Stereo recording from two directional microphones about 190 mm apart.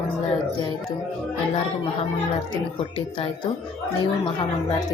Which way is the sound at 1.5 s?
35° left (ahead or behind).